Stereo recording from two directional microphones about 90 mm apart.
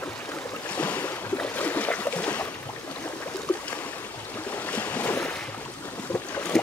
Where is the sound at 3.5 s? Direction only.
20° left (ahead or behind).